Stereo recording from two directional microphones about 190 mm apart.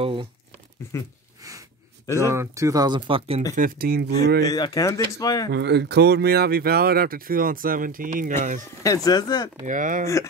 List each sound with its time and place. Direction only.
0.0 s speech: 30° right (ahead or behind)
2.2 s speech: 15° right (ahead or behind)
3.5 s speech: 50° right (ahead or behind)
4.4 s speech: 20° left (ahead or behind)
5.5 s speech: 60° right (ahead or behind); by 8.6 s 40° right (ahead or behind)
8.8 s speech: 20° left (ahead or behind)
9.7 s speech: 45° right (ahead or behind)